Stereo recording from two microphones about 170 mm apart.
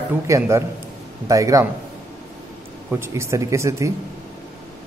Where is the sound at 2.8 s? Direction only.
15° right (ahead or behind).